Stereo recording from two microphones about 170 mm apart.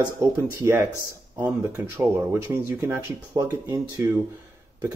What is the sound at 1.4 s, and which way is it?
Speech, 15° right (ahead or behind).